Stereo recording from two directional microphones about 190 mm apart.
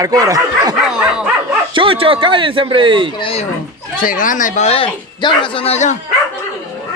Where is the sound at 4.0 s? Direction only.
45° left (ahead or behind).